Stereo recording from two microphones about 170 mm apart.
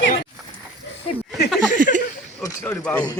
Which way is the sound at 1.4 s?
75° left (ahead or behind).